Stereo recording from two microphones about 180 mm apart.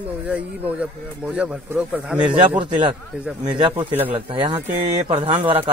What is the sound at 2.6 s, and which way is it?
Speech, 25° right (ahead or behind).